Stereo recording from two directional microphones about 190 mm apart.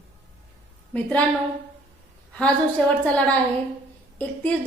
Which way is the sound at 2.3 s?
5° left (ahead or behind).